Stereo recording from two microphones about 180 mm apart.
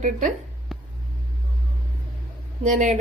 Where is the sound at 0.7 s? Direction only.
Centre (ahead or behind).